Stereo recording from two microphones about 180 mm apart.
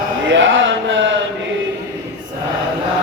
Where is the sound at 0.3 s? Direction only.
90° right.